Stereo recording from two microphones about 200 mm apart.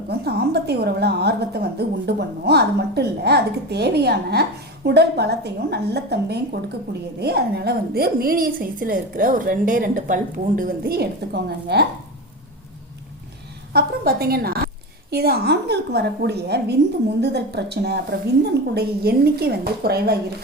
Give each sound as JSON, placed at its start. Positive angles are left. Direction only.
{"t": 0.1, "sound": "a woman's voice", "side_deg": -55}
{"t": 13.7, "sound": "a woman's voice", "side_deg": -50}